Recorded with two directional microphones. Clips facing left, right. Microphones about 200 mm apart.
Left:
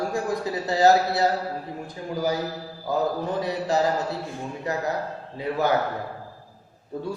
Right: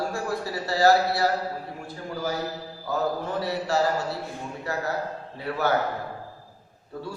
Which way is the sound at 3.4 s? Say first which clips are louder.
Left 1 dB; 15° left (ahead or behind).